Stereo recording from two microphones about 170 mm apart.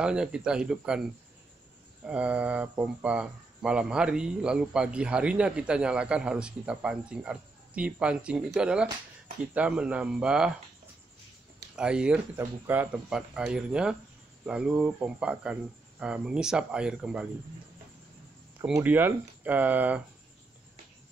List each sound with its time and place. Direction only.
0.0 s speech: 5° right (ahead or behind)
2.0 s speech: 5° right (ahead or behind)
11.7 s speech: 5° right (ahead or behind)
18.7 s speech: 10° right (ahead or behind)